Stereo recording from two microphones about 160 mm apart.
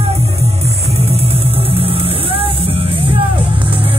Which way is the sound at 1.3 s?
35° right (ahead or behind).